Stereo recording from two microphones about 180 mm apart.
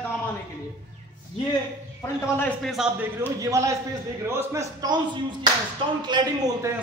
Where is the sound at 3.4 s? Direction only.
15° right (ahead or behind).